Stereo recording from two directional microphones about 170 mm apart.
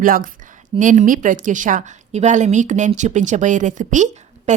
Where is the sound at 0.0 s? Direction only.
55° right (ahead or behind).